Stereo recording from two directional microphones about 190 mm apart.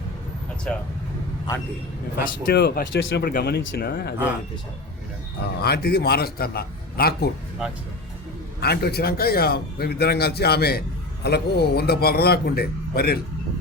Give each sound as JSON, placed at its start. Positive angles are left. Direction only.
{"t": 0.7, "sound": "speech", "side_deg": 5}
{"t": 2.2, "sound": "a man's voice", "side_deg": 55}
{"t": 5.5, "sound": "a man's voice", "side_deg": 55}
{"t": 8.6, "sound": "a man's voice", "side_deg": 55}